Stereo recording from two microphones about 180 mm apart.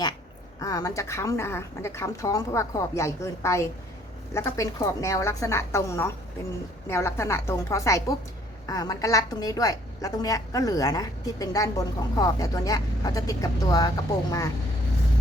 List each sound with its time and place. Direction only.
0.6 s a woman's voice: 20° left (ahead or behind)